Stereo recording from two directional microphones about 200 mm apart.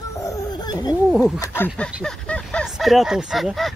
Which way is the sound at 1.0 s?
Centre (ahead or behind).